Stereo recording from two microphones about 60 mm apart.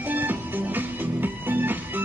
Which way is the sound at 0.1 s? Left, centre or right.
Right.